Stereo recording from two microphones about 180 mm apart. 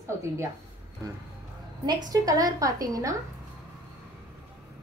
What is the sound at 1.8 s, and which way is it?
A woman's voice, 20° right (ahead or behind).